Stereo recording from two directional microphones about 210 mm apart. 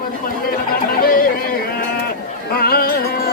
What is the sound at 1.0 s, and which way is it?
Speech, 45° left (ahead or behind).